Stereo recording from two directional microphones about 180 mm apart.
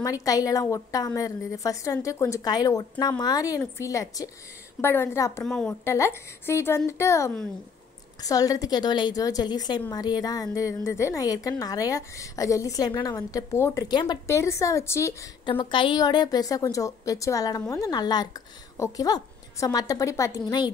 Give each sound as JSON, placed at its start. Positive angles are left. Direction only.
{"t": 0.0, "sound": "a woman's voice", "side_deg": 20}
{"t": 5.4, "sound": "a woman's voice", "side_deg": 5}
{"t": 5.9, "sound": "a woman's voice", "side_deg": 15}
{"t": 15.4, "sound": "a woman's voice", "side_deg": 25}